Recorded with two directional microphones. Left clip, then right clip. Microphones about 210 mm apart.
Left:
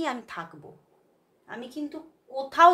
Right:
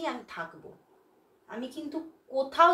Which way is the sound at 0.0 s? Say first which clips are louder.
Left 4 dB; 45° left (ahead or behind).